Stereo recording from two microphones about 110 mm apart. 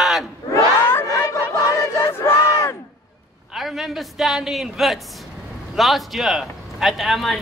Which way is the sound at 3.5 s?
5° right (ahead or behind).